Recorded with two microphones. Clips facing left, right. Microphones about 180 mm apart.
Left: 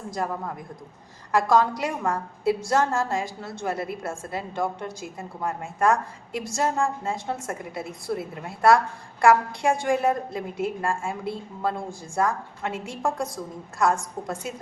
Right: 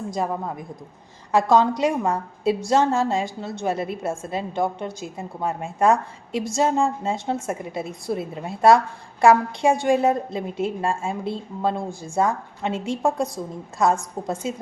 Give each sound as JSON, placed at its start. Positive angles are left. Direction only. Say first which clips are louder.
{"t": 0.1, "sound": "a woman's voice", "louder": "right 1 dB", "side_deg": -20}